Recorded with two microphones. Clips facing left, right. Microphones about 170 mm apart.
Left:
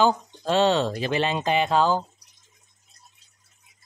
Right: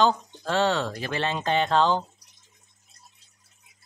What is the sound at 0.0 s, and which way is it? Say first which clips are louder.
Speech: left 1 dB; 15° left (ahead or behind).